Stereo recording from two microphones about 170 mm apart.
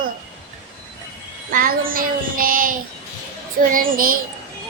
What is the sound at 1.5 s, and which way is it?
Child singing, 55° right (ahead or behind).